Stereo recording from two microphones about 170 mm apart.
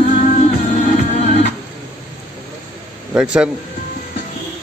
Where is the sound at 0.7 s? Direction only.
45° left (ahead or behind).